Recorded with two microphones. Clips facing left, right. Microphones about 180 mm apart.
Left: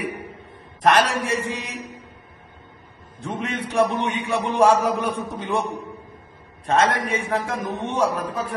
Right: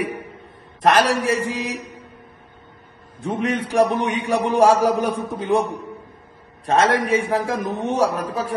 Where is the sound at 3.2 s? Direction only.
35° right (ahead or behind).